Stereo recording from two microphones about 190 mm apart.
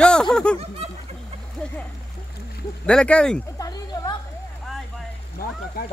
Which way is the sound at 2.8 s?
5° left (ahead or behind).